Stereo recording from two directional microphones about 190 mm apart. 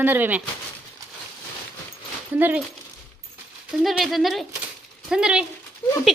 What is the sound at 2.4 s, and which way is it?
Speech, 10° right (ahead or behind).